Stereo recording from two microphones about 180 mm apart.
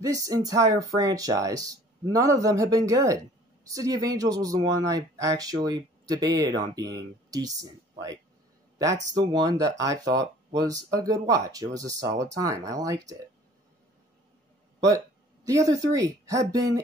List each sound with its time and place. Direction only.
0.0 s speech: 20° right (ahead or behind)
9.1 s speech: 25° right (ahead or behind)
15.4 s speech: 20° right (ahead or behind)